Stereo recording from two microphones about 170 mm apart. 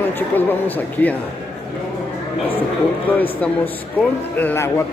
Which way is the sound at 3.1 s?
10° left (ahead or behind).